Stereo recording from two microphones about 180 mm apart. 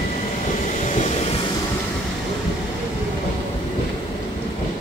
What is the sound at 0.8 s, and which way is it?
Vehicle, 40° left (ahead or behind).